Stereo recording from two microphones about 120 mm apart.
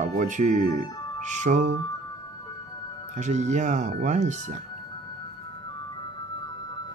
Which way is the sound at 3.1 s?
75° right (ahead or behind).